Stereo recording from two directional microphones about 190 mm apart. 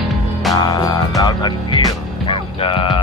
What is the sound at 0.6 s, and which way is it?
Speech, 20° left (ahead or behind).